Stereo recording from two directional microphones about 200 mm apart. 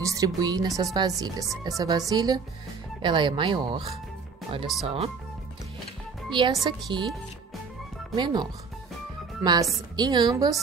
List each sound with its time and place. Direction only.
0.0 s speech: 15° right (ahead or behind)
6.3 s speech: 25° right (ahead or behind)
8.2 s speech: 20° right (ahead or behind)